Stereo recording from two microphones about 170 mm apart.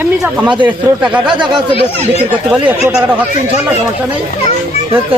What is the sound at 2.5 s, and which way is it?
Speech, 5° right (ahead or behind).